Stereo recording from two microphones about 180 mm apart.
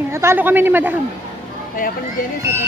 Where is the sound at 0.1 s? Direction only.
15° right (ahead or behind).